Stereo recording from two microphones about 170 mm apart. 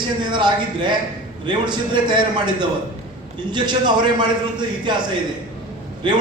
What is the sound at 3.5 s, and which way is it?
Speech, 25° right (ahead or behind).